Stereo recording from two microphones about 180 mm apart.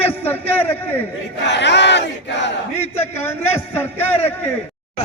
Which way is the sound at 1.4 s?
75° left (ahead or behind).